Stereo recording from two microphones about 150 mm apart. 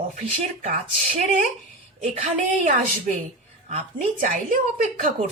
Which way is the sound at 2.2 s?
60° right (ahead or behind).